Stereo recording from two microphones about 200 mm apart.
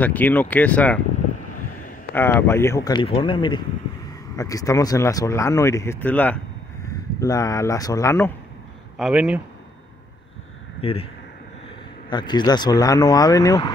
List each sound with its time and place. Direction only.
0.0 s speech: 10° left (ahead or behind)
2.1 s speech: 10° left (ahead or behind)
8.9 s speech: 5° right (ahead or behind)
10.8 s speech: 30° left (ahead or behind)
12.1 s speech: 20° left (ahead or behind)